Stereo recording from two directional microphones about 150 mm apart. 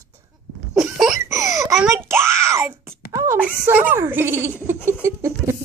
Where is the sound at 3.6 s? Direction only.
15° right (ahead or behind).